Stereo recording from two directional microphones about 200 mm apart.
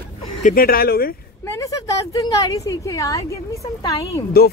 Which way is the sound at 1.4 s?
15° left (ahead or behind).